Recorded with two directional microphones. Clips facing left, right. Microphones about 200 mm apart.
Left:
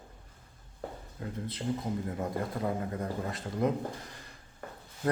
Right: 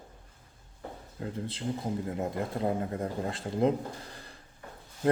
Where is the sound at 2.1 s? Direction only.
25° right (ahead or behind).